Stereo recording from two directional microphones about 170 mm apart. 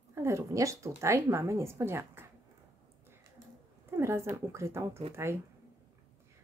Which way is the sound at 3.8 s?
15° right (ahead or behind).